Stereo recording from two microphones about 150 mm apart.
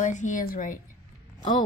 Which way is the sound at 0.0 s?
55° left (ahead or behind).